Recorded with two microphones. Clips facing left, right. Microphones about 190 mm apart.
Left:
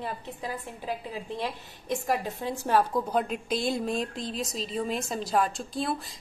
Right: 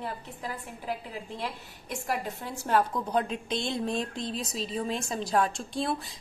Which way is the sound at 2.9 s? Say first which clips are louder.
Left 2 dB; 5° left (ahead or behind).